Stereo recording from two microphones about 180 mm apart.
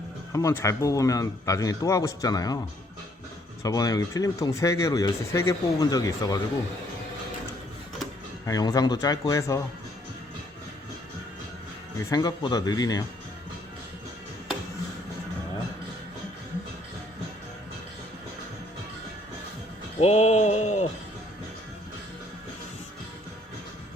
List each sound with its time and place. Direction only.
0.3 s speech: 15° left (ahead or behind)
3.6 s speech: 20° left (ahead or behind)
8.4 s speech: 20° left (ahead or behind)
12.1 s speech: 20° left (ahead or behind)
20.0 s a sound: 35° left (ahead or behind)